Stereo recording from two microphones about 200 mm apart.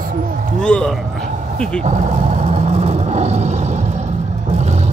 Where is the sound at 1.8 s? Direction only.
35° right (ahead or behind).